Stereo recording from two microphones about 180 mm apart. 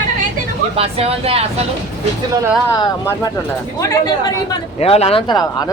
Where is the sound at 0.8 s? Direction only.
35° right (ahead or behind).